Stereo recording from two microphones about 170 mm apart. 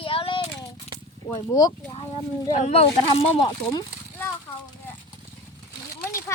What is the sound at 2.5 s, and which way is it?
Speech, 40° left (ahead or behind).